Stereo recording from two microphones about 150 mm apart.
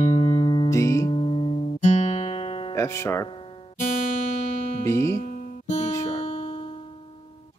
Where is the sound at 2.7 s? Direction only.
20° left (ahead or behind).